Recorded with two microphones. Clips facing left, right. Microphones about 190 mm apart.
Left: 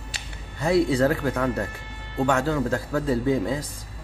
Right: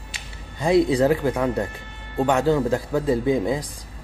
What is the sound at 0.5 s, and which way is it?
A man's voice, 15° right (ahead or behind).